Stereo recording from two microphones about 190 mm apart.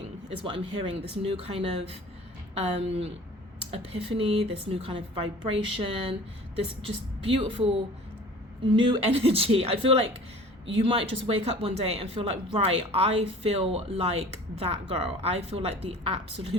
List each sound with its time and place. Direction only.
0.3 s speech: 30° right (ahead or behind)